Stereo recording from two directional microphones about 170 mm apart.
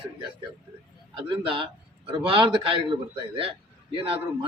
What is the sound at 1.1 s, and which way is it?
A man's voice, 30° right (ahead or behind).